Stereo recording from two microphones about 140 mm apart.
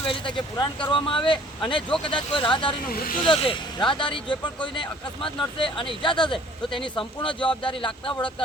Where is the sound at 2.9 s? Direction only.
90° left.